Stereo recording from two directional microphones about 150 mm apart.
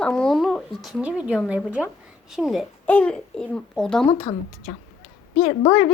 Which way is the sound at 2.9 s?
10° left (ahead or behind).